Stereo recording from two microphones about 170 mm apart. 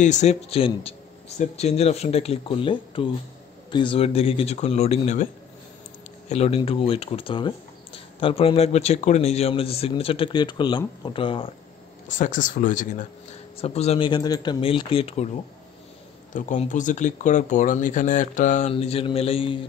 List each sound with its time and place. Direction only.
0.0 s speech: 45° left (ahead or behind)
12.1 s speech: 50° left (ahead or behind)
13.6 s speech: 35° left (ahead or behind)
16.3 s speech: 50° left (ahead or behind)
18.7 s speech: 35° left (ahead or behind)